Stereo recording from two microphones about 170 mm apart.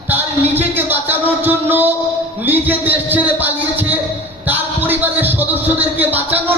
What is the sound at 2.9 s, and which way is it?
Speech, 10° right (ahead or behind).